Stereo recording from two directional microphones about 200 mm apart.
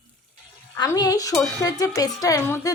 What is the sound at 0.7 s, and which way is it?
Stir, 15° left (ahead or behind).